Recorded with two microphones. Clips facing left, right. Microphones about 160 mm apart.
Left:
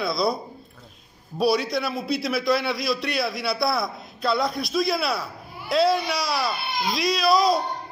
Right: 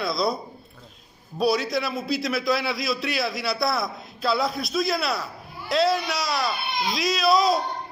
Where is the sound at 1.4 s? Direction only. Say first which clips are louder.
Left 1 dB; centre (ahead or behind).